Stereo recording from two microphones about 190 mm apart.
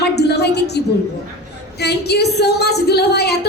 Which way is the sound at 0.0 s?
60° left (ahead or behind).